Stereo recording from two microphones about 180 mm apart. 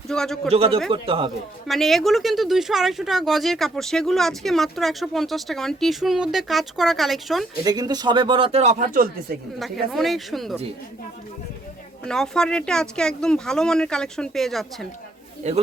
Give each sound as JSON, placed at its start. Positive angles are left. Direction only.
{"t": 0.1, "sound": "a man's voice", "side_deg": 5}
{"t": 0.5, "sound": "speech", "side_deg": -30}
{"t": 1.6, "sound": "speech", "side_deg": 0}
{"t": 7.6, "sound": "a man's voice", "side_deg": -20}
{"t": 9.6, "sound": "speech", "side_deg": 0}
{"t": 12.0, "sound": "speech", "side_deg": 5}
{"t": 15.4, "sound": "speech", "side_deg": -40}